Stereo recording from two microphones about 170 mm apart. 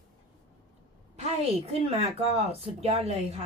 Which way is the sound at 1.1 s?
40° right (ahead or behind).